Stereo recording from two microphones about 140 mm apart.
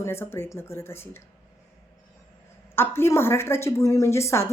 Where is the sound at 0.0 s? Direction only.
15° left (ahead or behind).